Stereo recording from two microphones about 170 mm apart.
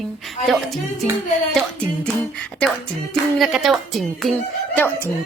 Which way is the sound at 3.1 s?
Centre (ahead or behind).